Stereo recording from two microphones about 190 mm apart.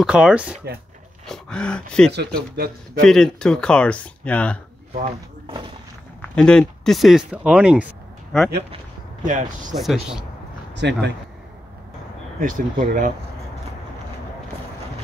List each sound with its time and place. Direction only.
0.0 s speech: 5° right (ahead or behind)
2.5 s speech: 55° right (ahead or behind)
3.1 s speech: 5° left (ahead or behind)
6.2 s speech: 5° left (ahead or behind)
9.2 s speech: 40° right (ahead or behind)
9.8 s speech: centre (ahead or behind)
10.7 s speech: 65° right (ahead or behind)
12.4 s speech: 45° right (ahead or behind)